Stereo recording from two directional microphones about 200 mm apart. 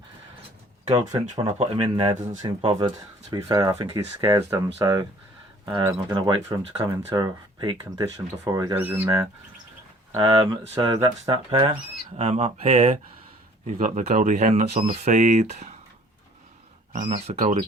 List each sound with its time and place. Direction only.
0.9 s speech: 20° right (ahead or behind)
10.2 s speech: 25° right (ahead or behind)
16.9 s speech: 40° right (ahead or behind)